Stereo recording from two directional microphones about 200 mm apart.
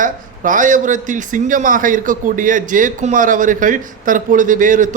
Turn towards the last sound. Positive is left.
turn(degrees=-40)  # may be behind; listen again after turning